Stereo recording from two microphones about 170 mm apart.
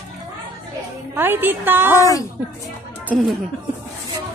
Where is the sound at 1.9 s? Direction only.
20° left (ahead or behind).